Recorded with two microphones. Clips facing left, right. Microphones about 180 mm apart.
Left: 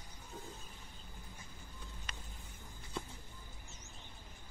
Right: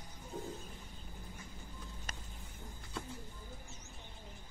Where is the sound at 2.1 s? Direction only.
45° right (ahead or behind).